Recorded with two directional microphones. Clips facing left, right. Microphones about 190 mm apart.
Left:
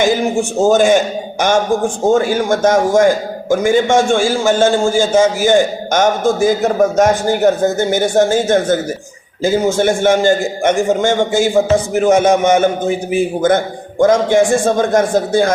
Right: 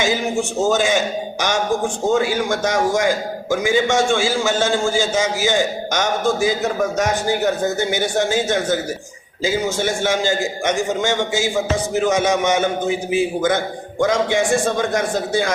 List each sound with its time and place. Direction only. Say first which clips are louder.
0.6 s a man's voice: left 8 dB; 50° left (ahead or behind)
2.0 s a man's voice: left 5 dB; 50° left (ahead or behind)